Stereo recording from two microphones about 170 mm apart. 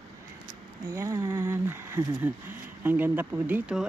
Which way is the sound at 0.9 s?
15° right (ahead or behind).